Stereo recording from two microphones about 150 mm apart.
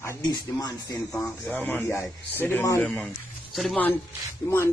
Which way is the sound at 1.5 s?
10° left (ahead or behind).